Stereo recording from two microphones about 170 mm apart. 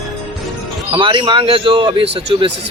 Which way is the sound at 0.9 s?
30° right (ahead or behind).